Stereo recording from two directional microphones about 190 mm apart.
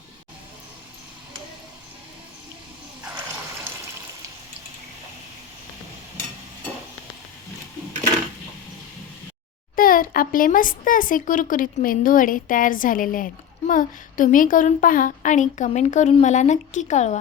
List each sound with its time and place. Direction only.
9.7 s speech: 45° left (ahead or behind)